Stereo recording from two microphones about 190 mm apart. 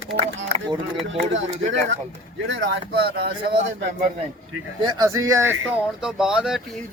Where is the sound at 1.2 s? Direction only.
75° right (ahead or behind); by 3.3 s 60° right (ahead or behind).